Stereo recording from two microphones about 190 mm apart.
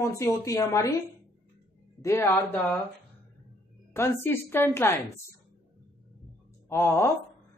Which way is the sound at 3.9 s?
15° left (ahead or behind).